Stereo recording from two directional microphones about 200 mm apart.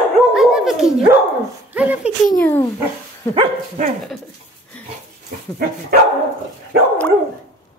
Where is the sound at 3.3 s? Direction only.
30° right (ahead or behind).